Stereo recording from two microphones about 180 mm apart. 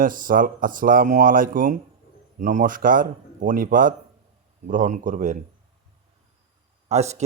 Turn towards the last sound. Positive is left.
turn(degrees=-40)  # may be behind; listen again after turning